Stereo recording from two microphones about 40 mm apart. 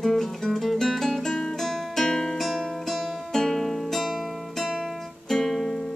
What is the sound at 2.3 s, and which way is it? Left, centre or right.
Music, centre.